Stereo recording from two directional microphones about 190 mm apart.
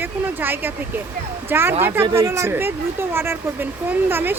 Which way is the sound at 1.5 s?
10° right (ahead or behind).